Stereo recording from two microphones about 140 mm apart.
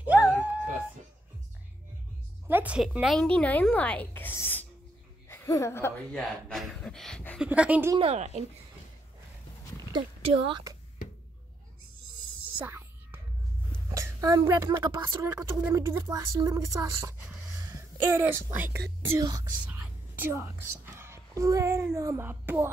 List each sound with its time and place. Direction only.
0.0 s a sound: 10° right (ahead or behind)
2.4 s a woman's voice: 10° right (ahead or behind)
3.2 s a woman's voice: 10° left (ahead or behind)
6.1 s speech: 5° left (ahead or behind)
7.3 s a woman's voice: 10° right (ahead or behind)
8.0 s speech: 50° right (ahead or behind)
10.2 s a woman's voice: 40° right (ahead or behind)
12.5 s whispering: 15° right (ahead or behind)
13.8 s speech: 25° right (ahead or behind)
17.6 s a sound: 20° right (ahead or behind)
19.1 s speech: 25° right (ahead or behind)
19.7 s whispering: 15° right (ahead or behind)
21.9 s a woman's voice: 20° right (ahead or behind)